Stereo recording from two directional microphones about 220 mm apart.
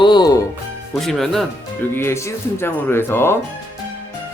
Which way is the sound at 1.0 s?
Centre (ahead or behind).